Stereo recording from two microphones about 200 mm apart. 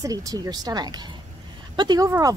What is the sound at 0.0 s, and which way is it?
Speech, 20° right (ahead or behind).